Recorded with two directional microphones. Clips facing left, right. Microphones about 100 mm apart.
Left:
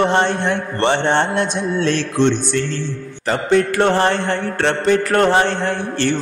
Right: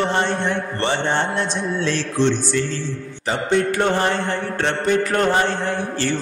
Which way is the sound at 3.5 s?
85° left.